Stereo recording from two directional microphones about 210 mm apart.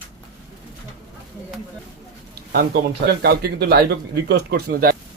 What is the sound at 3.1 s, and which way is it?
Speech, 50° right (ahead or behind).